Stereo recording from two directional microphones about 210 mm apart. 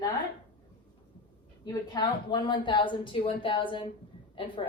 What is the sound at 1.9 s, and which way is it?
A woman's voice, 20° left (ahead or behind).